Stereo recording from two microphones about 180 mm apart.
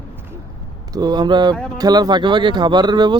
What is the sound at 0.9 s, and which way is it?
Speech, 25° right (ahead or behind).